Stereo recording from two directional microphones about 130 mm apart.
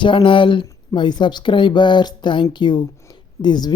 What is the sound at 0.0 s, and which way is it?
Speech, 40° left (ahead or behind).